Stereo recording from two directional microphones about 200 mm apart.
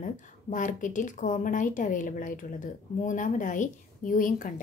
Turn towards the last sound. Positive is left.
turn(degrees=40)  # may be behind; listen again after turning